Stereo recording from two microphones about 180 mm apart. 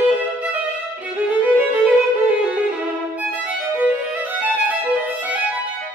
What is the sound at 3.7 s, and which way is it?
Music, 10° right (ahead or behind).